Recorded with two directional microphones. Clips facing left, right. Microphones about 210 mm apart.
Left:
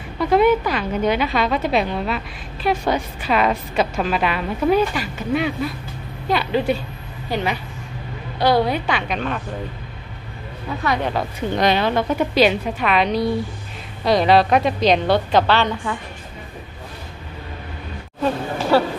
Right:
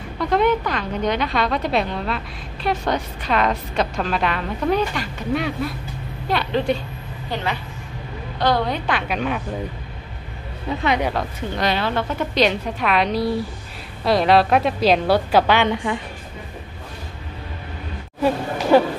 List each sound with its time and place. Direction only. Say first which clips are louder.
0.2 s a woman's voice: left 3 dB; 5° left (ahead or behind)
10.8 s speech: right 1 dB; 20° right (ahead or behind)
11.5 s a woman's voice: left 4 dB; 20° left (ahead or behind); by 16.0 s 20° right (ahead or behind)
18.7 s a woman's voice: right 2 dB; 15° right (ahead or behind)